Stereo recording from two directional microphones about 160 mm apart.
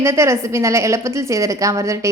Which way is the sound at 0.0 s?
15° right (ahead or behind).